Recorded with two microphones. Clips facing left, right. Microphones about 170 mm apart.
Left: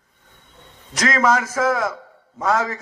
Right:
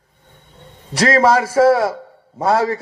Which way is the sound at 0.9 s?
35° right (ahead or behind).